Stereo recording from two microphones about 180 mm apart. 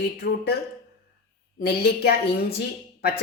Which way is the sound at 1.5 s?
60° left (ahead or behind).